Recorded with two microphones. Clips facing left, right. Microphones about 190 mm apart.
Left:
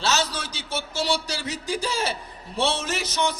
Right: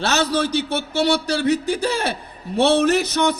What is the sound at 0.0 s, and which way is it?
A man's voice, 60° right (ahead or behind).